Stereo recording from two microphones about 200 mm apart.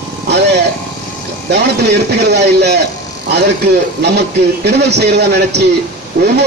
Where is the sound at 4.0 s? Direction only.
55° right (ahead or behind).